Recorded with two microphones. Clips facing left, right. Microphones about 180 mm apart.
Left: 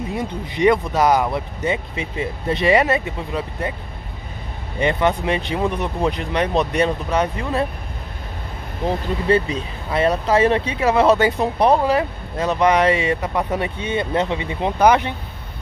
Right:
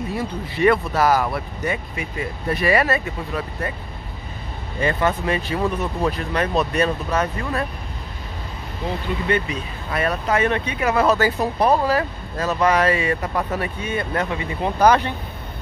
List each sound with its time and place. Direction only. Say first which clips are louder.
0.1 s speech: left 1 dB; 20° left (ahead or behind)
4.7 s speech: left 2 dB; 20° left (ahead or behind)
8.8 s speech: left 4 dB; 30° left (ahead or behind); by 15.1 s 15° left (ahead or behind)